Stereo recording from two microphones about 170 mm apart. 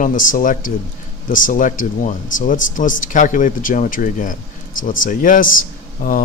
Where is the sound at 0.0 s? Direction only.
50° left (ahead or behind).